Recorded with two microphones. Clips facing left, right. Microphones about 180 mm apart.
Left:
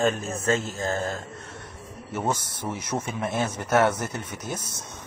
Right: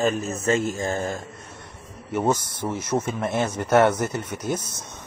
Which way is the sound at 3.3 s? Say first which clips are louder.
Right 1 dB; 10° left (ahead or behind).